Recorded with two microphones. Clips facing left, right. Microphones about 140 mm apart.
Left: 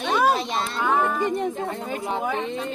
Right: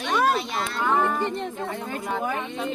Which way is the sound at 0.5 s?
25° left (ahead or behind).